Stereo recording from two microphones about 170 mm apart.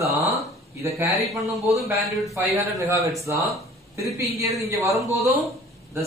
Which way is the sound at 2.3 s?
15° right (ahead or behind).